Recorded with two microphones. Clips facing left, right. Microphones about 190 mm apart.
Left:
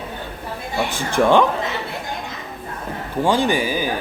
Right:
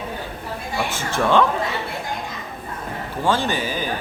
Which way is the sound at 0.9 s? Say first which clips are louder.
Left 5 dB; 15° left (ahead or behind).